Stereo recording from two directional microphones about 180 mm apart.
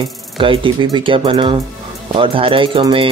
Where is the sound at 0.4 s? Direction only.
30° right (ahead or behind).